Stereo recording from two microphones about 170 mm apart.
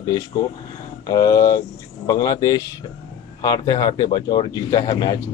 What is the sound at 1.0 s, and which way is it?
Speech, 20° left (ahead or behind).